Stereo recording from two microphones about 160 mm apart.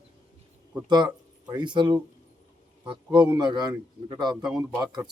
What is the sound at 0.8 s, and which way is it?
Speech, 25° right (ahead or behind).